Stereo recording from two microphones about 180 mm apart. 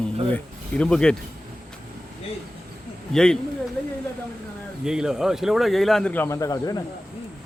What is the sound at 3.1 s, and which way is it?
Speech, 5° left (ahead or behind).